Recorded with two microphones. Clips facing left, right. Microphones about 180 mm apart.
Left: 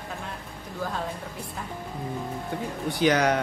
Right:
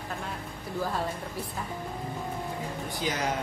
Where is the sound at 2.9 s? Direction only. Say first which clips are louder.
Left 10 dB; 70° left (ahead or behind).